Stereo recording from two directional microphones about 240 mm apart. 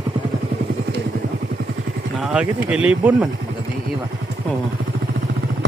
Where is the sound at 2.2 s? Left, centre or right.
Centre.